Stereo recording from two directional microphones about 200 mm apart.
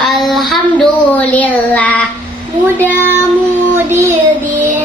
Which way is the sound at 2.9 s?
10° right (ahead or behind).